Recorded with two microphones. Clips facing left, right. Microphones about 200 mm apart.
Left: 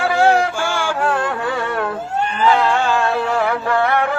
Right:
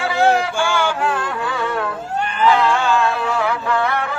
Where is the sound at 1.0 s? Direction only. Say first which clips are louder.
Left 2 dB; 60° left (ahead or behind).